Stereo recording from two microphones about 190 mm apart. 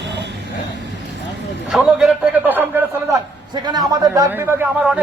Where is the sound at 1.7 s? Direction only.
5° right (ahead or behind).